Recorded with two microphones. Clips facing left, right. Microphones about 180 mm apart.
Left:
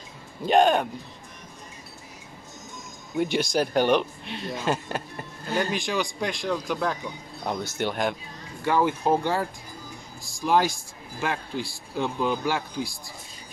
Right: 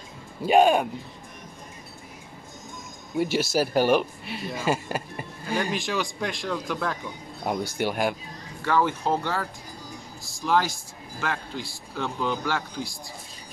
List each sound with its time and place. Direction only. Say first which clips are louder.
0.4 s speech: right 1 dB; 10° right (ahead or behind)
3.2 s speech: even; 5° right (ahead or behind)
7.4 s speech: right 2 dB; 10° right (ahead or behind)
8.6 s speech: left 2 dB; 15° left (ahead or behind)